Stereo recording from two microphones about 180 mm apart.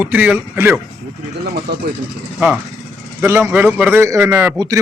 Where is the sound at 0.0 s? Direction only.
10° right (ahead or behind).